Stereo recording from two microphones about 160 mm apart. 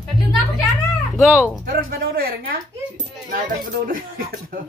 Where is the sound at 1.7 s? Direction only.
65° right (ahead or behind).